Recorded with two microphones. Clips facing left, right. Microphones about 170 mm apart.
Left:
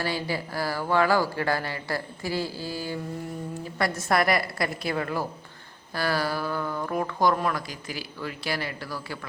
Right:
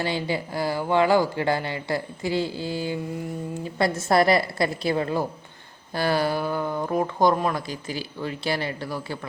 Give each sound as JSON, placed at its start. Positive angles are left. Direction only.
{"t": 0.0, "sound": "speech", "side_deg": -20}